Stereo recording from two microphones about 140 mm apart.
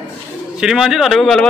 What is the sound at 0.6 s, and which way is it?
Speech, 5° right (ahead or behind).